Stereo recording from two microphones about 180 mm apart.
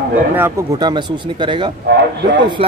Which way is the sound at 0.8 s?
25° right (ahead or behind).